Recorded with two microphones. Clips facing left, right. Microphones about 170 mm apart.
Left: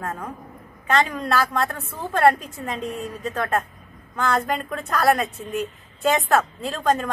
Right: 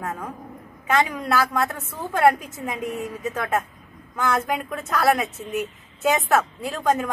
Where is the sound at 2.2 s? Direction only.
15° right (ahead or behind).